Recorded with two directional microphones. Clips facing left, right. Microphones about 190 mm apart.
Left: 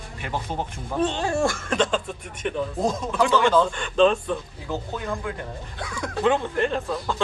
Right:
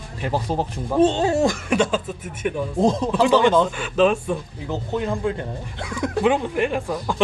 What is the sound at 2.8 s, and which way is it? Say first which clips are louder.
Speech: right 6 dB; 25° right (ahead or behind).